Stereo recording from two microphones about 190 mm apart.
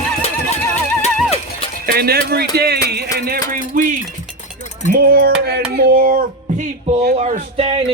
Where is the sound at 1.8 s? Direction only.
55° right (ahead or behind).